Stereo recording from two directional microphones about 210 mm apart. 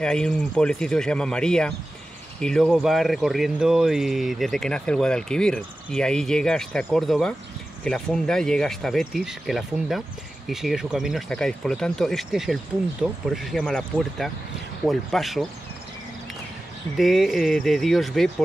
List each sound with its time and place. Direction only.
0.0 s speech: 5° left (ahead or behind)
16.9 s speech: centre (ahead or behind)